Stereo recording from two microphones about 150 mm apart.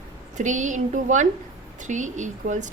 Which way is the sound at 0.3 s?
55° right (ahead or behind).